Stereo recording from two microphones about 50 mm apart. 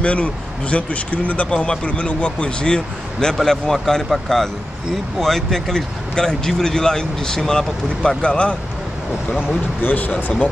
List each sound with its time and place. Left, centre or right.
0.0 s speech: left; by 8.2 s centre
8.2 s speech: left
9.5 s speech: left